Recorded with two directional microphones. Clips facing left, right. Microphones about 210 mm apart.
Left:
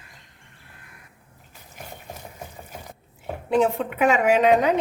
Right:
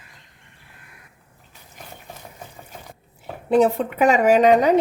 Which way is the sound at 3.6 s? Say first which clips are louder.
Right 3 dB; 35° right (ahead or behind).